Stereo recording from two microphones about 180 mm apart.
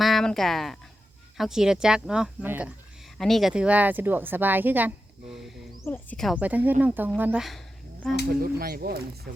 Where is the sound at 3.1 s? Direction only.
Centre (ahead or behind).